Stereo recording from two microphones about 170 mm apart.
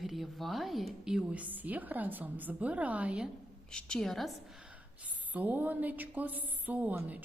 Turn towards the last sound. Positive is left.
turn(degrees=-10)  # may be behind; listen again after turning